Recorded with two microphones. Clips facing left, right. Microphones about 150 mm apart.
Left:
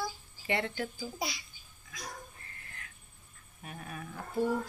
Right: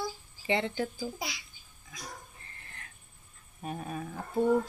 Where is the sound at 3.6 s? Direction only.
30° right (ahead or behind).